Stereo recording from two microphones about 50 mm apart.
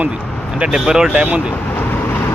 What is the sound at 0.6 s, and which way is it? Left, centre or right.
Speech, centre.